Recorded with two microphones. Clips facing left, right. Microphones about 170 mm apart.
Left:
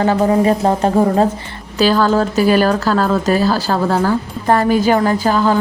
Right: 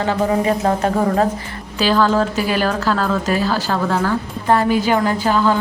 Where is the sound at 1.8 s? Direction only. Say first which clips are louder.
Left 2 dB; 40° left (ahead or behind).